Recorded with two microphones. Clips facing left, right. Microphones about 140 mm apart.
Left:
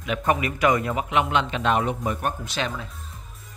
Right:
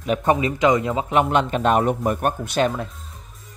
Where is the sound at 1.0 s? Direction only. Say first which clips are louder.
Right 4 dB; 45° right (ahead or behind).